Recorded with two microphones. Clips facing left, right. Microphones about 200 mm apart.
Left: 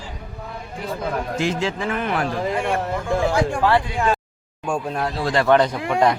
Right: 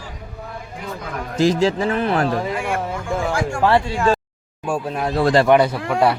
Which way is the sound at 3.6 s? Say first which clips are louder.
Right 6 dB; 25° right (ahead or behind).